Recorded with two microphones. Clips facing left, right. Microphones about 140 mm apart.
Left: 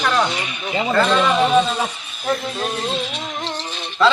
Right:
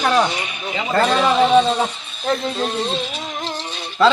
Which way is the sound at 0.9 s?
35° right (ahead or behind).